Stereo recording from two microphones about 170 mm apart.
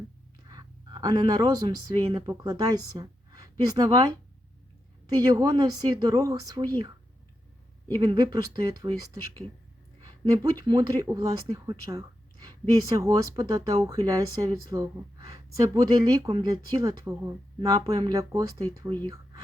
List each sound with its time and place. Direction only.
0.4 s speech: 25° right (ahead or behind)
10.3 s speech: 25° right (ahead or behind)